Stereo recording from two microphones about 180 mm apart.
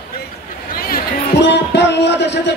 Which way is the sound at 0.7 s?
55° left (ahead or behind).